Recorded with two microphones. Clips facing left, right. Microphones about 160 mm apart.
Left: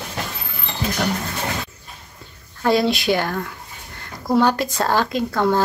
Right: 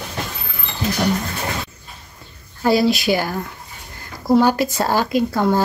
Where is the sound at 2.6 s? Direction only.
5° right (ahead or behind).